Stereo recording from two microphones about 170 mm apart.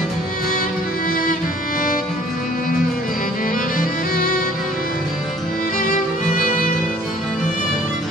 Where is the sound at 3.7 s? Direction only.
55° left (ahead or behind).